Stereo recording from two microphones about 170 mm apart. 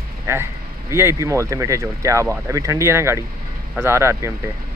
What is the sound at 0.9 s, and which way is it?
Speech, 15° right (ahead or behind).